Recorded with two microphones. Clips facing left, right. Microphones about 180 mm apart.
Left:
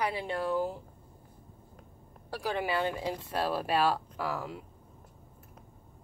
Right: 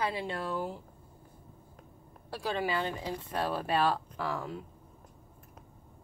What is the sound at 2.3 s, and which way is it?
Speech, 15° left (ahead or behind).